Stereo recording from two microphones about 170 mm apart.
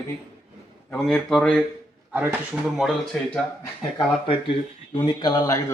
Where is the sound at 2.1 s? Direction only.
10° right (ahead or behind).